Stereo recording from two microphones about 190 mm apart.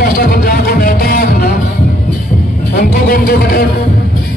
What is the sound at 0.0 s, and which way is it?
Music, 50° left (ahead or behind).